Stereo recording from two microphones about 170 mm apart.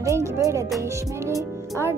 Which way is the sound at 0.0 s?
15° right (ahead or behind).